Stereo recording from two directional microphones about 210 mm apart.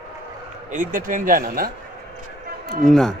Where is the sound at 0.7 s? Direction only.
40° right (ahead or behind).